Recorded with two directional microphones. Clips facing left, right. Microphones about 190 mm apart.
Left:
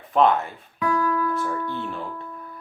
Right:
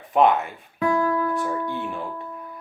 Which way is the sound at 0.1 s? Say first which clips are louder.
Right 1 dB; 15° right (ahead or behind).